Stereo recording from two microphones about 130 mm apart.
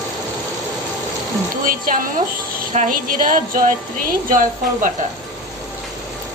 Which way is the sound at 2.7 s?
80° right.